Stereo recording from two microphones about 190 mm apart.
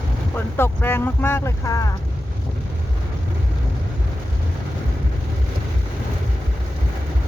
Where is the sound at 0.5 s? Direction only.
10° left (ahead or behind).